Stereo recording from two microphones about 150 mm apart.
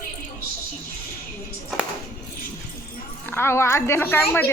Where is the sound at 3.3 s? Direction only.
15° left (ahead or behind).